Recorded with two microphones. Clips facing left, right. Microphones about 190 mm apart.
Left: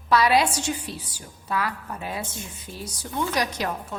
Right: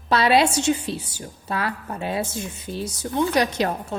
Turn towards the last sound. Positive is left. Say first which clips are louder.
# right 5 dB
turn(degrees=-25)  # may be behind; listen again after turning